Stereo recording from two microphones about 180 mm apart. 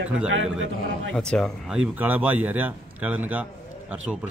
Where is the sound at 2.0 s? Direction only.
10° right (ahead or behind).